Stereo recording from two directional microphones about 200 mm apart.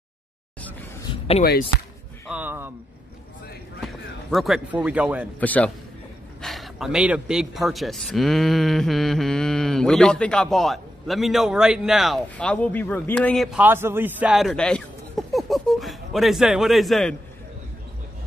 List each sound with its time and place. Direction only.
1.1 s a sound: 30° left (ahead or behind)
2.3 s speech: 10° right (ahead or behind)
3.8 s speech: centre (ahead or behind)
5.4 s a man's voice: 10° left (ahead or behind)